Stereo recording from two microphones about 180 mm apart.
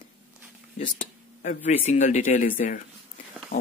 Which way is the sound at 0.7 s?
45° left (ahead or behind).